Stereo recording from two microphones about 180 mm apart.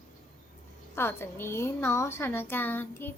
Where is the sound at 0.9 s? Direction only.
15° left (ahead or behind).